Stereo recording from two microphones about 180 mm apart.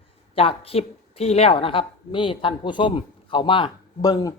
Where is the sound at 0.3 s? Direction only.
30° left (ahead or behind).